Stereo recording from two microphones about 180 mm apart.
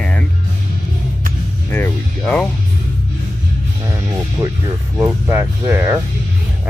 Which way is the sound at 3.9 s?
15° right (ahead or behind).